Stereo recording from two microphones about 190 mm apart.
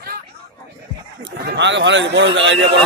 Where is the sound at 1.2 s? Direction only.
70° right (ahead or behind).